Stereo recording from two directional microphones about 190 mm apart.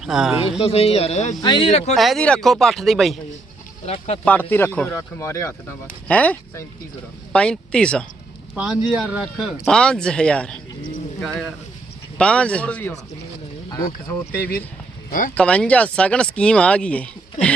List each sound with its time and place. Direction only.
0.0 s speech: centre (ahead or behind)
0.6 s speech: 30° left (ahead or behind)
1.4 s speech: 25° left (ahead or behind)
2.0 s speech: centre (ahead or behind)
3.8 s speech: 35° left (ahead or behind)
4.3 s speech: 10° left (ahead or behind)
14.1 s speech: 10° left (ahead or behind)
17.4 s speech: 40° left (ahead or behind)